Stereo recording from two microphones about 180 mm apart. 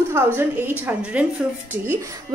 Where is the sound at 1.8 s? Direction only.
15° right (ahead or behind).